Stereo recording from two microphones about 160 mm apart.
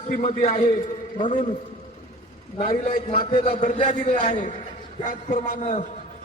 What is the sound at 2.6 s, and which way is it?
Speech, 45° left (ahead or behind).